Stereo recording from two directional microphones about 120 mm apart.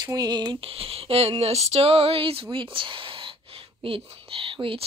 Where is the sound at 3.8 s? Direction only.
50° right (ahead or behind).